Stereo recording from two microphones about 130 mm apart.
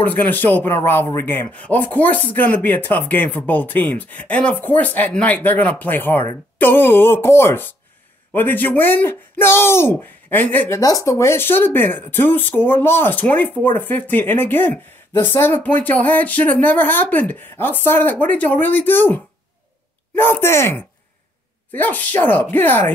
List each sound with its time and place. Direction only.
0.0 s speech: 15° left (ahead or behind)
10.8 s speech: 25° left (ahead or behind)